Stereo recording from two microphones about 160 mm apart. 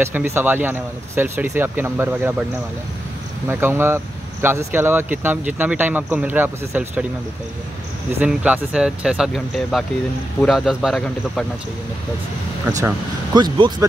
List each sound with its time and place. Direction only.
0.0 s speech: 15° right (ahead or behind)
3.4 s speech: 15° right (ahead or behind)
8.2 s speech: 5° right (ahead or behind)
13.3 s speech: 25° right (ahead or behind)